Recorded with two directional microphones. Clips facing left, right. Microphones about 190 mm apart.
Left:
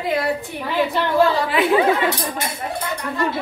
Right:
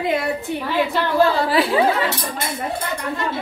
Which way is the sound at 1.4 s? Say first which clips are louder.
Right 1 dB; 35° right (ahead or behind).